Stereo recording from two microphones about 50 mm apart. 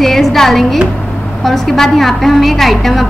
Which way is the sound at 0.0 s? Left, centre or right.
Centre.